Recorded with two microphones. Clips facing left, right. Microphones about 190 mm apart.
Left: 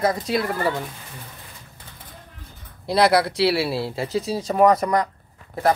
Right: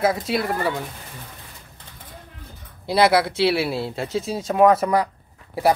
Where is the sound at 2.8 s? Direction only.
Centre (ahead or behind).